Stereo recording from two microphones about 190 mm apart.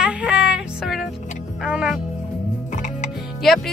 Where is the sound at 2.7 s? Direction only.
40° left (ahead or behind).